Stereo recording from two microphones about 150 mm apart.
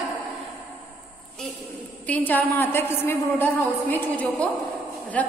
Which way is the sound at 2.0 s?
10° left (ahead or behind).